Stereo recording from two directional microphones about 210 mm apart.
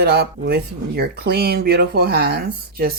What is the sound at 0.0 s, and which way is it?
Speech, 50° right (ahead or behind).